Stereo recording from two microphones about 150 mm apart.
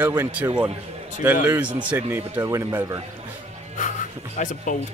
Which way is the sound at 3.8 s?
55° left (ahead or behind).